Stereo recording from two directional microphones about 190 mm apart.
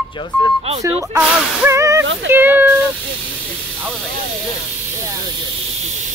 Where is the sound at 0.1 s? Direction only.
25° left (ahead or behind).